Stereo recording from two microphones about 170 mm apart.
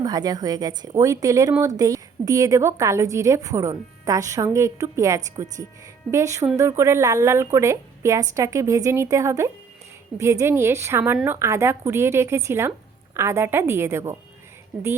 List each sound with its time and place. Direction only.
0.0 s a woman's voice: 25° right (ahead or behind)